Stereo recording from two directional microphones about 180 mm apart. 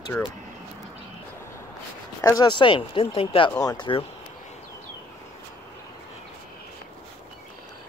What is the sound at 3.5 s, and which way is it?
Speech, 20° left (ahead or behind).